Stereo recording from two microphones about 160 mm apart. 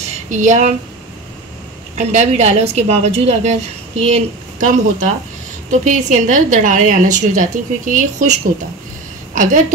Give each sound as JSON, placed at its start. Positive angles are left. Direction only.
{"t": 0.3, "sound": "a woman's voice", "side_deg": -50}
{"t": 2.0, "sound": "a woman's voice", "side_deg": -45}